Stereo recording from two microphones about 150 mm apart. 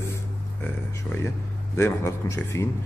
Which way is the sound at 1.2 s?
20° left (ahead or behind).